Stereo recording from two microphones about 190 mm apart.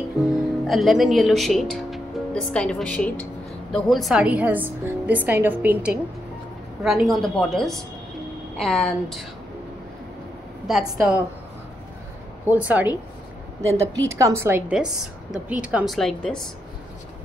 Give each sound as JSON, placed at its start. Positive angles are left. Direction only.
{"t": 0.2, "sound": "a woman's voice", "side_deg": 0}
{"t": 10.7, "sound": "a woman's voice", "side_deg": -5}
{"t": 12.4, "sound": "a woman's voice", "side_deg": -10}
{"t": 14.0, "sound": "a woman's voice", "side_deg": -15}